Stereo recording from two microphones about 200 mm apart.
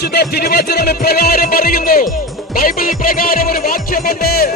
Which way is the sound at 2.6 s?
45° left (ahead or behind).